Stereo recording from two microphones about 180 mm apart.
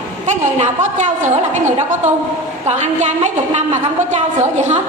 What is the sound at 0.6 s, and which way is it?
A woman's voice, 40° right (ahead or behind).